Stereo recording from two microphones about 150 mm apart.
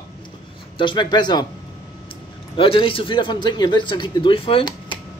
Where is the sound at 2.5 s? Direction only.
35° left (ahead or behind).